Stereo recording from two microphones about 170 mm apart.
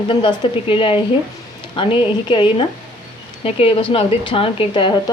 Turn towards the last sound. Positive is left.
turn(degrees=30)  # may be behind; listen again after turning